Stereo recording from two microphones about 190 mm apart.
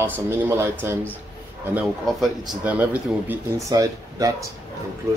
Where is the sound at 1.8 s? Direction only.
Centre (ahead or behind); by 4.3 s 15° right (ahead or behind).